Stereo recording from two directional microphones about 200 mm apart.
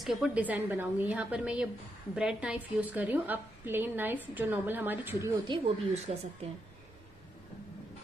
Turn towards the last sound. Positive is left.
turn(degrees=-30)  # may be behind; listen again after turning